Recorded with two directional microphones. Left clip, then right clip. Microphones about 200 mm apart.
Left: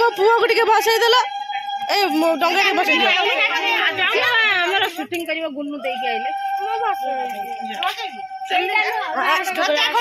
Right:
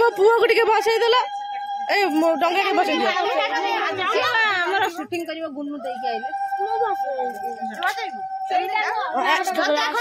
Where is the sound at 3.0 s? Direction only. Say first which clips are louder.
Left 4 dB; 25° right (ahead or behind).